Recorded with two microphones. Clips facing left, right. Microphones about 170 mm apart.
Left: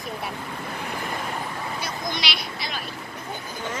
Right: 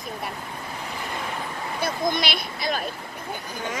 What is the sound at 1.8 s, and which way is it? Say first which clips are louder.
Vehicle: right 10 dB; 50° right (ahead or behind).